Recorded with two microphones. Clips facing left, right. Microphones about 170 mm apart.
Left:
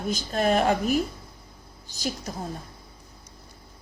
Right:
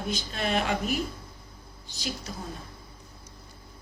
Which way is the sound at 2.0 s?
45° left (ahead or behind).